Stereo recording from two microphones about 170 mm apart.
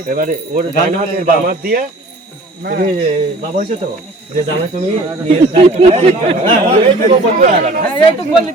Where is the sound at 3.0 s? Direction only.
35° right (ahead or behind).